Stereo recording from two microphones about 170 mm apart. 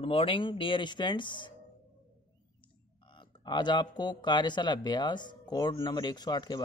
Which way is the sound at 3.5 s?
25° left (ahead or behind).